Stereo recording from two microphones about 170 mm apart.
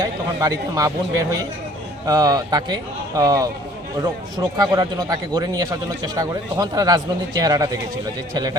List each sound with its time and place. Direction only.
0.0 s a man's voice: 20° right (ahead or behind)
4.5 s a man's voice: 25° right (ahead or behind)